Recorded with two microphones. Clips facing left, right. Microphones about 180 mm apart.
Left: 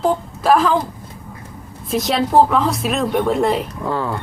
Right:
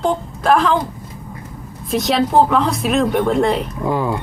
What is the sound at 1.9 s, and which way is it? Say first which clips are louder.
Speech: right 1 dB; centre (ahead or behind).